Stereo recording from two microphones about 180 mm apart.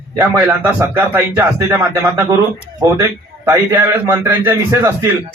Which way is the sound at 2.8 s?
20° right (ahead or behind).